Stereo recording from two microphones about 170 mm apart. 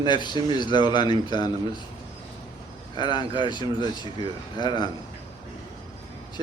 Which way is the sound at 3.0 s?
25° left (ahead or behind).